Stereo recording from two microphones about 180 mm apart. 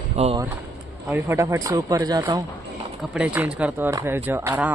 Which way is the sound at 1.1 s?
15° right (ahead or behind).